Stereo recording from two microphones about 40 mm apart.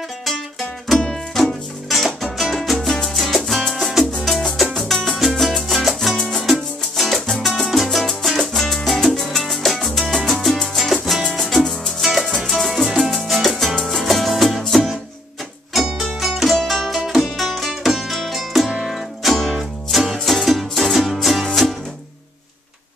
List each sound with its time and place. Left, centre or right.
0.2 s music: centre
4.7 s salsa music: centre
5.2 s music: centre
16.0 s music: centre